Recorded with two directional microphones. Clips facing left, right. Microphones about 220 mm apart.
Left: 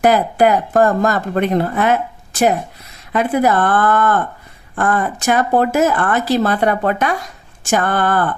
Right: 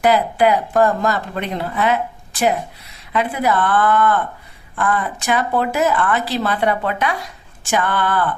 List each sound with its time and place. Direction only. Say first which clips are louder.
0.0 s a woman's voice: left 2 dB; 45° left (ahead or behind)
3.1 s a woman's voice: left 4 dB; 45° left (ahead or behind)